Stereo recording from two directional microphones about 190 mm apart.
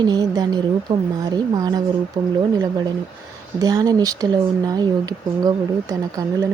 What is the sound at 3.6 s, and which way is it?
Speech, 20° right (ahead or behind).